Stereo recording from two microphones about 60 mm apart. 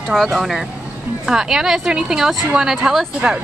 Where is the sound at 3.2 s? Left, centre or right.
Right.